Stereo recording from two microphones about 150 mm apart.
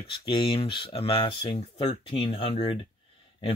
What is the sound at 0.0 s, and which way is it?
Speech, 35° left (ahead or behind).